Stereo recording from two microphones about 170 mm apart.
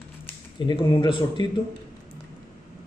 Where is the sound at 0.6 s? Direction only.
30° left (ahead or behind).